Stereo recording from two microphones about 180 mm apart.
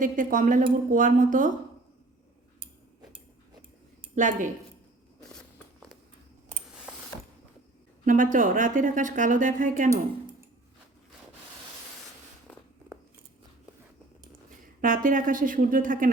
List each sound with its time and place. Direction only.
0.0 s a woman's voice: 50° right (ahead or behind)
4.1 s a woman's voice: 45° right (ahead or behind)
8.0 s a woman's voice: 45° right (ahead or behind)
14.8 s a woman's voice: 50° right (ahead or behind)